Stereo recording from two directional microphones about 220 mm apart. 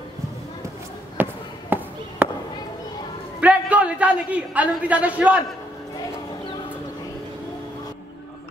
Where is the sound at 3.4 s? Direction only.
5° right (ahead or behind).